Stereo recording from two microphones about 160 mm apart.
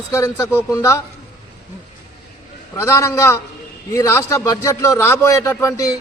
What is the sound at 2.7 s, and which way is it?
A man's voice, 15° left (ahead or behind).